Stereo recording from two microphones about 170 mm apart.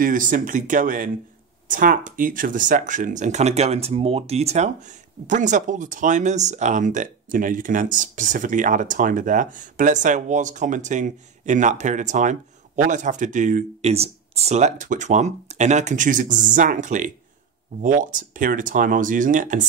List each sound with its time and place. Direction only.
0.0 s speech: 50° right (ahead or behind)